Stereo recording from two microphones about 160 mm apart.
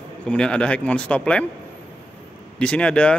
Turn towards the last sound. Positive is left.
turn(degrees=5)  # may be behind; listen again after turning